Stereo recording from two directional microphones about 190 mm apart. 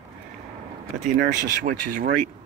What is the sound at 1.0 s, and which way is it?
Speech, 45° right (ahead or behind).